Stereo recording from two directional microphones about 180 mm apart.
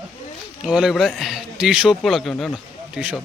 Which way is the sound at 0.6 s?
5° right (ahead or behind).